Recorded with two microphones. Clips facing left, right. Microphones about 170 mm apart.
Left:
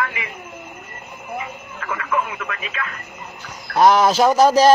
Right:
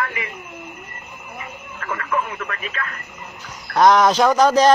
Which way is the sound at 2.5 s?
15° left (ahead or behind).